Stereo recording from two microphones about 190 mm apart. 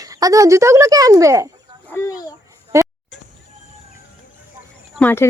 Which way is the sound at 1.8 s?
15° left (ahead or behind).